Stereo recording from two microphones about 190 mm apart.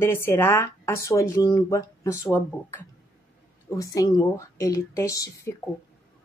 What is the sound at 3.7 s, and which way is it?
Speech, 15° left (ahead or behind).